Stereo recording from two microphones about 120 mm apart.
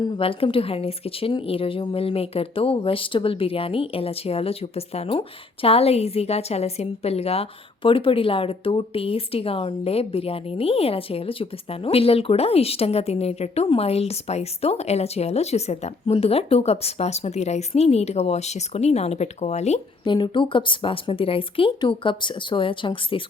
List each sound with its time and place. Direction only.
0.2 s a woman's voice: 50° left (ahead or behind); by 19.8 s 65° left (ahead or behind)
20.1 s speech: 40° left (ahead or behind)